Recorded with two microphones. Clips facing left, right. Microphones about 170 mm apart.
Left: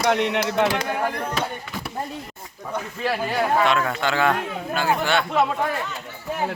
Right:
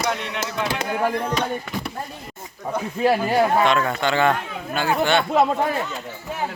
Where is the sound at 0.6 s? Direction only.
65° left (ahead or behind).